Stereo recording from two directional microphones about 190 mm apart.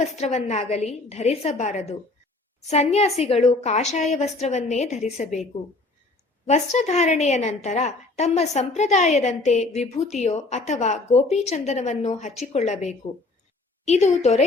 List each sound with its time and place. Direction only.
0.2 s a woman's voice: 35° left (ahead or behind)
6.4 s a woman's voice: 35° left (ahead or behind)